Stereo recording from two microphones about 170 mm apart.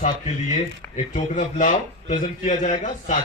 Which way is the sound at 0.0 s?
45° left (ahead or behind).